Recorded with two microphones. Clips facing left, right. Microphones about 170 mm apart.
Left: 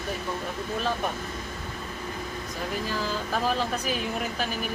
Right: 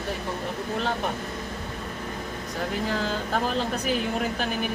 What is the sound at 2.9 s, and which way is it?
Speech, 65° right (ahead or behind).